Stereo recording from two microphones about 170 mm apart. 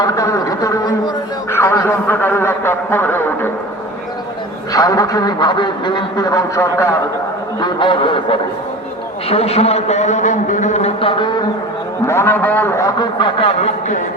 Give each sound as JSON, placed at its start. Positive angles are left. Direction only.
{"t": 0.0, "sound": "a man's voice", "side_deg": 20}
{"t": 4.7, "sound": "a man's voice", "side_deg": 20}
{"t": 7.6, "sound": "a man's voice", "side_deg": 30}
{"t": 12.0, "sound": "a man's voice", "side_deg": 15}